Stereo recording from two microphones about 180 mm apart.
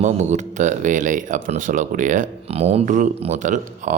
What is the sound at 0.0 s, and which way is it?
Speech, 40° right (ahead or behind).